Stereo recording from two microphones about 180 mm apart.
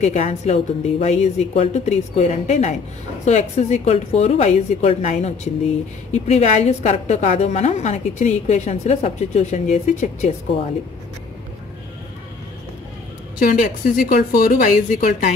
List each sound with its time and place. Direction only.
0.0 s a woman's voice: 40° left (ahead or behind)
13.4 s speech: 45° left (ahead or behind)